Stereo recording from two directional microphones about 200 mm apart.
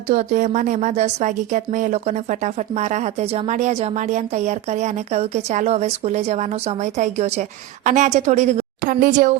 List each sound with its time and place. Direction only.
0.1 s speech: 35° right (ahead or behind)